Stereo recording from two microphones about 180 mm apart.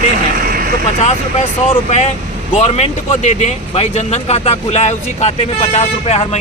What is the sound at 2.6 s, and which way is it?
Speech, 40° left (ahead or behind).